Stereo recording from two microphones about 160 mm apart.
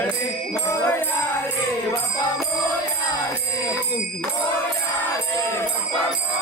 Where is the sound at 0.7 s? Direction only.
15° left (ahead or behind).